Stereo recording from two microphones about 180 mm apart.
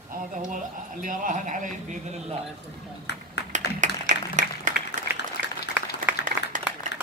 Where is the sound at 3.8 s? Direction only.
45° right (ahead or behind).